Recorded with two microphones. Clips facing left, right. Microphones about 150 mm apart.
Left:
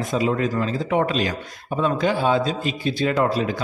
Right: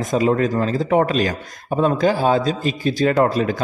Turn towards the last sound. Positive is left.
turn(degrees=-45)  # may be behind; listen again after turning